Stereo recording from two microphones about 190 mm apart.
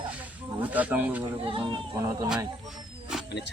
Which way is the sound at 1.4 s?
25° right (ahead or behind).